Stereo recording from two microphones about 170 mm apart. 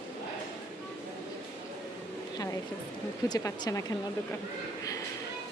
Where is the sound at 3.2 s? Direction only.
20° left (ahead or behind).